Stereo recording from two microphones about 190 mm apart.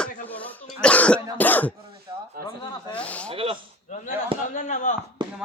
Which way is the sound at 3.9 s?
40° left (ahead or behind).